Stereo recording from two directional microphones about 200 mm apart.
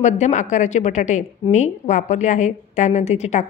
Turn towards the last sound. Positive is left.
turn(degrees=35)  # may be behind; listen again after turning